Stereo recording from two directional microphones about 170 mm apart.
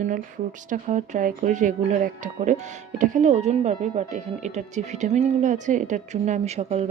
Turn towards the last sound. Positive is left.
turn(degrees=-40)  # may be behind; listen again after turning